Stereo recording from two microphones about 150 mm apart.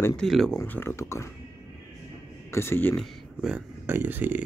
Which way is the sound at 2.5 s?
15° left (ahead or behind).